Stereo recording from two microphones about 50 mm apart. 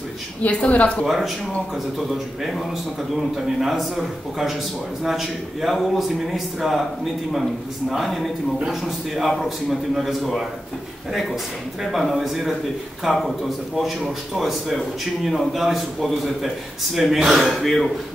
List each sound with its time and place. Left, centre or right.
0.4 s a woman's voice: left
1.0 s a man's voice: centre
7.9 s a man's voice: centre
11.8 s a man's voice: centre